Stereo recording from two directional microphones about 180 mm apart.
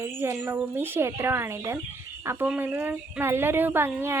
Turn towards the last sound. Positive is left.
turn(degrees=-15)  # may be behind; listen again after turning